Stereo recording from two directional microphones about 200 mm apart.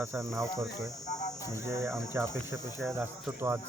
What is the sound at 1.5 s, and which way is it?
Speech, 15° right (ahead or behind).